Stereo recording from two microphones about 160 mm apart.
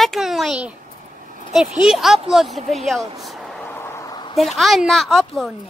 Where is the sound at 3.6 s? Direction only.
15° left (ahead or behind).